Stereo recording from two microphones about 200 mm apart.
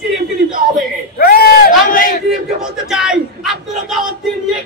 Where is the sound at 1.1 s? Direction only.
50° left (ahead or behind).